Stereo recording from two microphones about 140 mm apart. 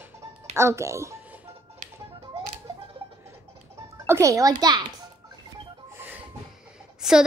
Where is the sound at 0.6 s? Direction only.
20° right (ahead or behind).